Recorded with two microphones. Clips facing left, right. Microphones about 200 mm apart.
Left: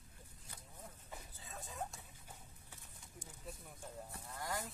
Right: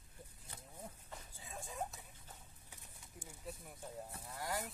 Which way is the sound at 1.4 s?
15° right (ahead or behind).